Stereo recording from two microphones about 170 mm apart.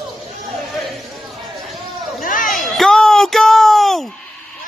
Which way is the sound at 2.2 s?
55° left (ahead or behind).